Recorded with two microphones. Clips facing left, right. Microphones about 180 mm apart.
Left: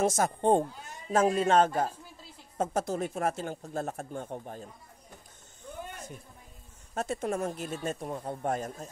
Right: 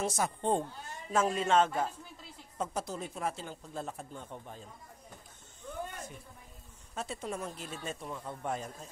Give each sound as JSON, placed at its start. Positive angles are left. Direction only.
{"t": 0.0, "sound": "speech", "side_deg": 45}
{"t": 6.9, "sound": "speech", "side_deg": 50}